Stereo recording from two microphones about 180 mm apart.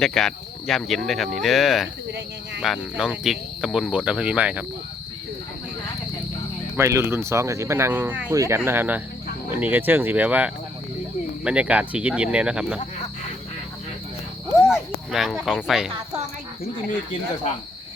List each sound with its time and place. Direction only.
0.0 s speech: 5° left (ahead or behind)
6.7 s speech: 15° right (ahead or behind)
14.6 s a sound: centre (ahead or behind)